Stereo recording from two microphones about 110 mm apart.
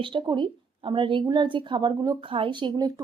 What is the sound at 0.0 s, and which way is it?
A woman's voice, 45° right (ahead or behind).